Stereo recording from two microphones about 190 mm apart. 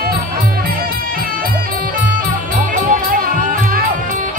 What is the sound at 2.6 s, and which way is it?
Music, 50° right (ahead or behind).